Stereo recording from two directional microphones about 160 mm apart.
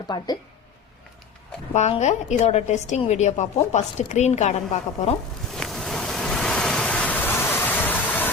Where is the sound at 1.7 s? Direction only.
45° left (ahead or behind).